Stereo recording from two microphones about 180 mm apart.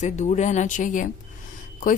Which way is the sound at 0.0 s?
40° left (ahead or behind).